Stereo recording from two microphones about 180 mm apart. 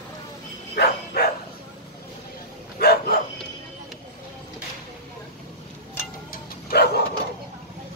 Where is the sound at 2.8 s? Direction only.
60° left (ahead or behind).